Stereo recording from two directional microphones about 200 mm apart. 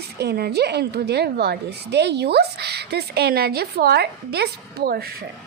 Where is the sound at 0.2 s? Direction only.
55° right (ahead or behind).